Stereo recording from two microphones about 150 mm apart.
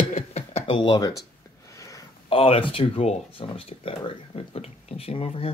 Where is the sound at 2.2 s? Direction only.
40° left (ahead or behind).